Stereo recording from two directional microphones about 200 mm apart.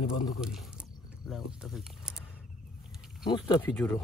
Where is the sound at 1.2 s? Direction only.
Centre (ahead or behind).